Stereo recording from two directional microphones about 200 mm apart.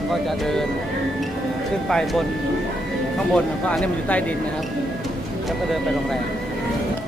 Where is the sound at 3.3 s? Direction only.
5° left (ahead or behind).